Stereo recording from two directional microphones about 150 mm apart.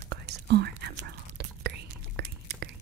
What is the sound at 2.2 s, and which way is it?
Whispering, 90° right.